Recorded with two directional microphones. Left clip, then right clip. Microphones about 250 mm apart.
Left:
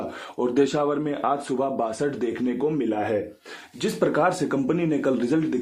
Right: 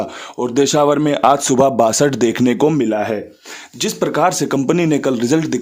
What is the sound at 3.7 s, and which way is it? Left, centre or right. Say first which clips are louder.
A man's voice: right 6 dB; right.